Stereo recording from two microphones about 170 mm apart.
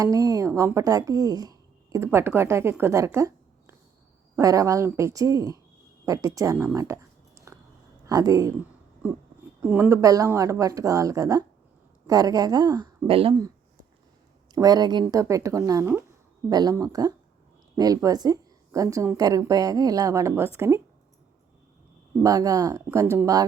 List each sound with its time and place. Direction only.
0.0 s a woman's voice: 20° right (ahead or behind)
6.7 s a sound: 15° right (ahead or behind)
8.0 s speech: 20° right (ahead or behind)
9.6 s a woman's voice: 10° right (ahead or behind); by 13.3 s 35° right (ahead or behind)
14.5 s a woman's voice: 20° right (ahead or behind)
22.2 s a woman's voice: 20° right (ahead or behind)